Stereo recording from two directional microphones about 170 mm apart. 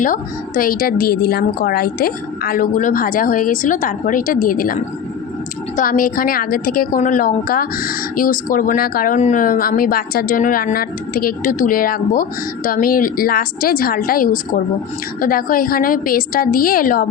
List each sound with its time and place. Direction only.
0.0 s a woman's voice: 55° left (ahead or behind)